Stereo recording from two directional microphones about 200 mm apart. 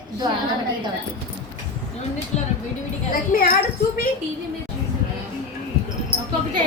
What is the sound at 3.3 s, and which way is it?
Speech, 40° left (ahead or behind).